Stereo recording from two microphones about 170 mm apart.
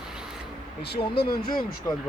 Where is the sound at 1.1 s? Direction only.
65° left (ahead or behind).